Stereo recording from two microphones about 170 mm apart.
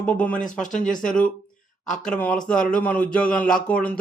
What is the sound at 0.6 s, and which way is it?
Speech, 50° left (ahead or behind).